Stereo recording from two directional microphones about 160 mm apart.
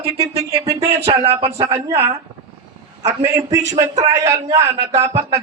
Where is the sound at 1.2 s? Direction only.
45° right (ahead or behind).